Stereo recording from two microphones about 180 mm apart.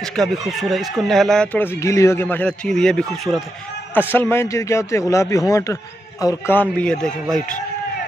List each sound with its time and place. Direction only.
0.2 s speech: centre (ahead or behind)